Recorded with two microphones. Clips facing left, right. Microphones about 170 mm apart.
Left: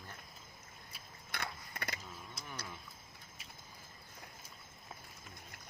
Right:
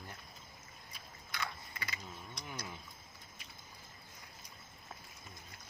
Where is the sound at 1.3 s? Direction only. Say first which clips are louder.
Right 1 dB; 60° left (ahead or behind).